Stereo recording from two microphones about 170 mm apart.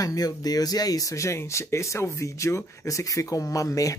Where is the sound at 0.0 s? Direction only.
20° left (ahead or behind).